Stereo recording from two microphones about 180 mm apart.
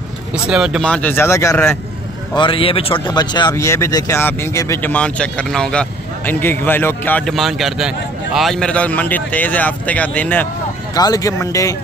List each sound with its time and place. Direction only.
0.3 s speech: 5° right (ahead or behind); by 1.8 s 15° left (ahead or behind)
2.3 s speech: 30° left (ahead or behind); by 10.5 s 10° left (ahead or behind)
11.0 s speech: 20° left (ahead or behind)